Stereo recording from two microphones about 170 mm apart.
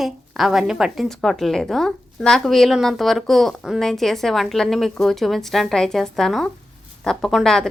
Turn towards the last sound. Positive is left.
turn(degrees=0)  # may be behind; listen again after turning